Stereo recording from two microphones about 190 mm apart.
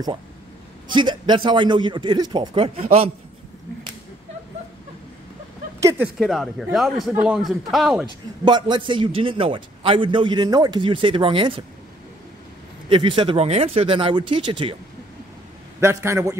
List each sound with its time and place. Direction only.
0.8 s a man's voice: 25° right (ahead or behind)
5.8 s speech: 15° right (ahead or behind)
6.1 s speech: centre (ahead or behind)
8.5 s a man's voice: 25° right (ahead or behind)
12.9 s a man's voice: 25° right (ahead or behind)
15.8 s a man's voice: 15° right (ahead or behind)